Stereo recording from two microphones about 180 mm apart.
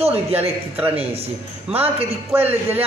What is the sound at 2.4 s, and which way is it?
Speech, 35° right (ahead or behind).